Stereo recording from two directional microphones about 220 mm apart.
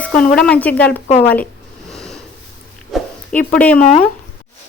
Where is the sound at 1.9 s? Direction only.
Centre (ahead or behind).